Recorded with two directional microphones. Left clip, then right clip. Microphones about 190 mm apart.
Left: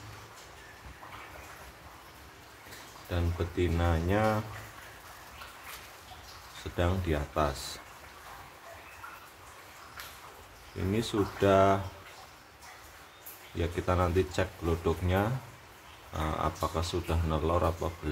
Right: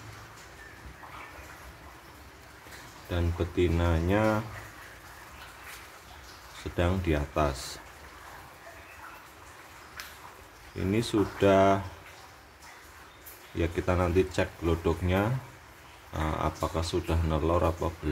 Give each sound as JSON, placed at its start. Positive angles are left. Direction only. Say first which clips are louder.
{"t": 3.1, "sound": "speech", "louder": "right 3 dB", "side_deg": -15}
{"t": 6.8, "sound": "speech", "louder": "right 2 dB", "side_deg": -15}
{"t": 10.9, "sound": "speech", "louder": "right 3 dB", "side_deg": -15}
{"t": 13.6, "sound": "speech", "louder": "right 1 dB", "side_deg": -15}